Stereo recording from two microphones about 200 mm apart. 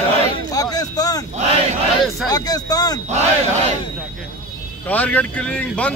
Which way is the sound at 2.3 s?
20° left (ahead or behind).